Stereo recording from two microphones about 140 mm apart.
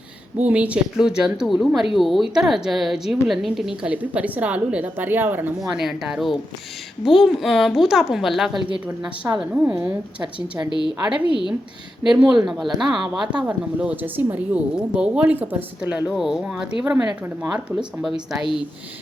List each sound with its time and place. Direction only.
0.4 s a woman's voice: 10° right (ahead or behind)
5.5 s a woman's voice: 5° right (ahead or behind)
10.7 s a woman's voice: 35° left (ahead or behind)
11.0 s a woman's voice: 5° right (ahead or behind)